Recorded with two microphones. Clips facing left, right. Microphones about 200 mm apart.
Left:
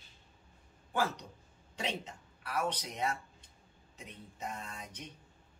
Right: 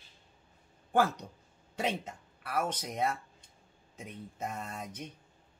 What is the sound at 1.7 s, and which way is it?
Speech, 55° right (ahead or behind).